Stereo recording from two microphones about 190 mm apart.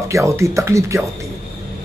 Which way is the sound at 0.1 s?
15° right (ahead or behind).